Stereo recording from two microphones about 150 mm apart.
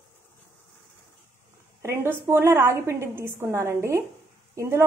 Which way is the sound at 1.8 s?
15° right (ahead or behind).